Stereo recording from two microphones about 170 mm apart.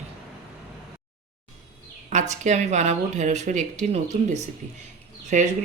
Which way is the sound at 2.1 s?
45° right (ahead or behind).